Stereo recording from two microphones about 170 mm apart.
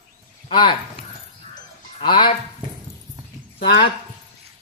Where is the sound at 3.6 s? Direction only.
30° left (ahead or behind).